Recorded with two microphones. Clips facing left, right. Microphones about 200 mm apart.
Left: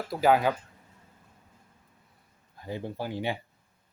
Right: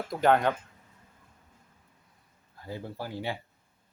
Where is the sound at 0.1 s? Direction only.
5° left (ahead or behind).